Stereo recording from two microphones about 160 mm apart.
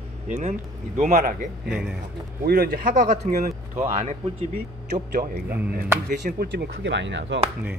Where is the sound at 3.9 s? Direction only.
45° right (ahead or behind).